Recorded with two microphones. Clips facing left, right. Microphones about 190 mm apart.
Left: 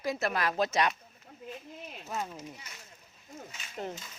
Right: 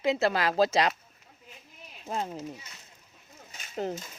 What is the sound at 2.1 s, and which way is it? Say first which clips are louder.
Speech: right 4 dB; 30° right (ahead or behind).